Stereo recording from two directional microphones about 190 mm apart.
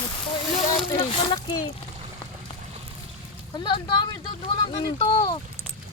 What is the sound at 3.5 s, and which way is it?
Speech, 25° left (ahead or behind).